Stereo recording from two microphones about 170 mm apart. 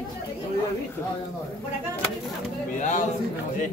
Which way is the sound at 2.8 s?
45° left (ahead or behind).